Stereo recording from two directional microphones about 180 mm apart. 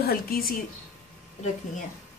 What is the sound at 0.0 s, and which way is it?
Speech, 55° left (ahead or behind).